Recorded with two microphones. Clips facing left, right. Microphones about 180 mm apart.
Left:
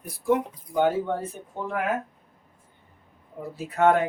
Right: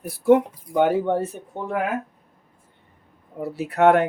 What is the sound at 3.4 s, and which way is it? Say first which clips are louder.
Speech: right 4 dB; 70° right (ahead or behind).